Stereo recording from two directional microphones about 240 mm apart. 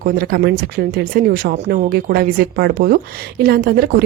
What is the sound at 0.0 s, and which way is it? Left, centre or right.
Speech, right.